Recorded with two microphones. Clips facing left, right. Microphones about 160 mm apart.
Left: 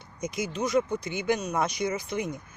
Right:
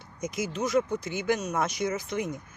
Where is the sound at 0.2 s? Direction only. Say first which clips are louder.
Even; centre (ahead or behind).